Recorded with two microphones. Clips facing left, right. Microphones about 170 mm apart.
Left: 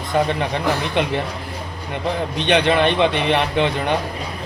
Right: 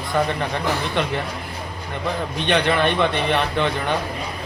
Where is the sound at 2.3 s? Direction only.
20° left (ahead or behind).